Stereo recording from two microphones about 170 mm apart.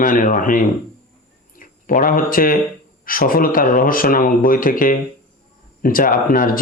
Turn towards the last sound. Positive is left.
turn(degrees=55)  # may be behind; listen again after turning